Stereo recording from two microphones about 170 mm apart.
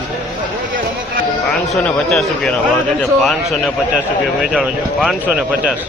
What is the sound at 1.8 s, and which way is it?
A man's voice, 5° left (ahead or behind).